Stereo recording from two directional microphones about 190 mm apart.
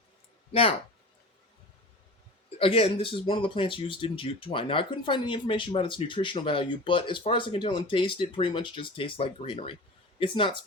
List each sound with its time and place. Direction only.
2.6 s speech: 30° left (ahead or behind)